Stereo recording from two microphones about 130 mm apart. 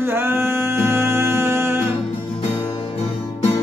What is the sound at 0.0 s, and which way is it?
Music, 15° right (ahead or behind).